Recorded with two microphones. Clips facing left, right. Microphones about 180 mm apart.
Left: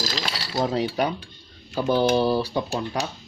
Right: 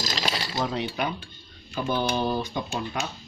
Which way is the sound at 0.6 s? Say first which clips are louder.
Left 7 dB; 35° left (ahead or behind).